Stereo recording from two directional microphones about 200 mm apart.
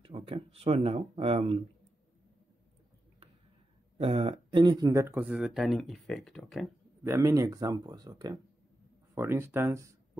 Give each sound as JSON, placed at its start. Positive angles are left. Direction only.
{"t": 0.0, "sound": "speech", "side_deg": -25}
{"t": 4.0, "sound": "speech", "side_deg": -30}
{"t": 7.1, "sound": "speech", "side_deg": -15}